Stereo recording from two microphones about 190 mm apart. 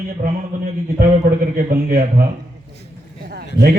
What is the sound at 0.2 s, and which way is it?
Speech, 45° right (ahead or behind).